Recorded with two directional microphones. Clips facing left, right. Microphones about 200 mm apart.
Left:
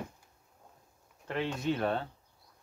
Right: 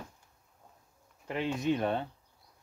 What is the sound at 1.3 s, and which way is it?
Speech, 10° right (ahead or behind).